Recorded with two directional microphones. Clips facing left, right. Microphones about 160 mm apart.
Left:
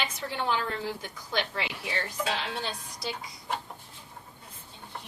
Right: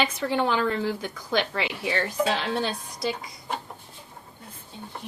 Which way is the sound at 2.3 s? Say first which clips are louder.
Right 6 dB; 65° right (ahead or behind).